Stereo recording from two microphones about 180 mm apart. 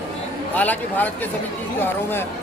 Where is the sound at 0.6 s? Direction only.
10° left (ahead or behind).